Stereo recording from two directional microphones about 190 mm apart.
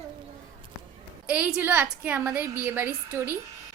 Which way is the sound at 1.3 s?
5° right (ahead or behind).